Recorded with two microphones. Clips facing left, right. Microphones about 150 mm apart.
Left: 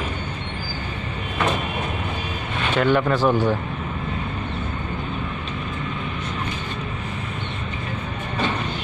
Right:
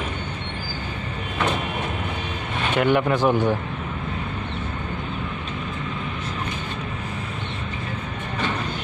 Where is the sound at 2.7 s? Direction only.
15° right (ahead or behind).